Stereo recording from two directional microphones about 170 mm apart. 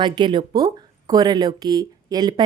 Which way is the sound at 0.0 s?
25° right (ahead or behind).